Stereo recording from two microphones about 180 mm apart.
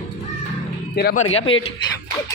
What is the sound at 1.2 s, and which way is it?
Speech, 35° left (ahead or behind).